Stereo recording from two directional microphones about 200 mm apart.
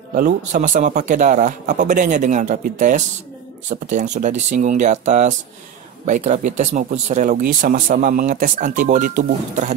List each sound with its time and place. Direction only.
0.1 s speech: 40° right (ahead or behind)